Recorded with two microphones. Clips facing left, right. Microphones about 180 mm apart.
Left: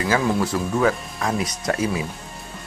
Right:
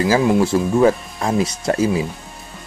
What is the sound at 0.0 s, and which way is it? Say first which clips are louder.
Speech: right 6 dB; 25° right (ahead or behind).